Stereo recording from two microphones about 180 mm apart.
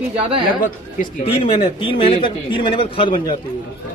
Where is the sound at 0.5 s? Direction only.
50° left (ahead or behind).